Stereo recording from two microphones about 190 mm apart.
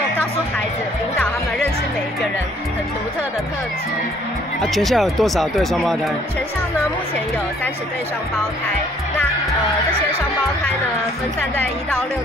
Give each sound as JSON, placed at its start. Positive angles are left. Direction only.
{"t": 4.6, "sound": "speech", "side_deg": 0}